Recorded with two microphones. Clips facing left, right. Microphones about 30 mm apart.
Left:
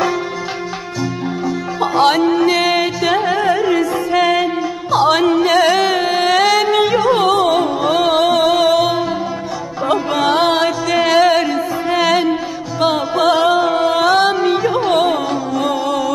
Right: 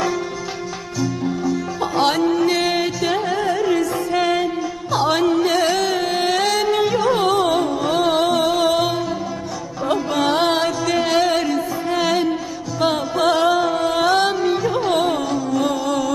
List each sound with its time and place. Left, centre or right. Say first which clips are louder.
2.0 s music: left 5 dB; centre
2.2 s music: left 4 dB; left
6.2 s music: left 6 dB; centre
13.9 s music: left 3 dB; centre
14.3 s music: left 4 dB; left